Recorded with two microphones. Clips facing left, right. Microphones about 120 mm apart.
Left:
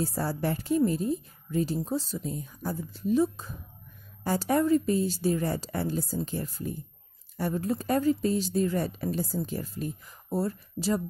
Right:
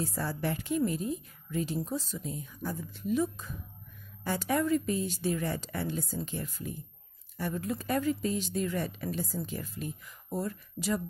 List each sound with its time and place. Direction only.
0.0 s a woman's voice: 35° left (ahead or behind)